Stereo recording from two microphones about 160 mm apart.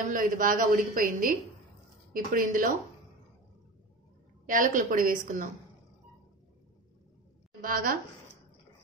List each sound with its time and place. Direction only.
0.1 s speech: 60° right (ahead or behind)
4.5 s speech: 55° right (ahead or behind)
7.6 s speech: 65° right (ahead or behind)